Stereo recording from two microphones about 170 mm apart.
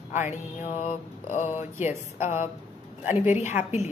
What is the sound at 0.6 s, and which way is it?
Mantra, 45° left (ahead or behind).